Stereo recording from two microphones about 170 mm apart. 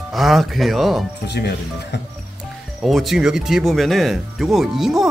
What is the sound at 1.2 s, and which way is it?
Speech, 80° left.